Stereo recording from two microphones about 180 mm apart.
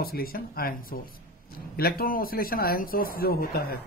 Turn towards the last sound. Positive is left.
turn(degrees=55)  # may be behind; listen again after turning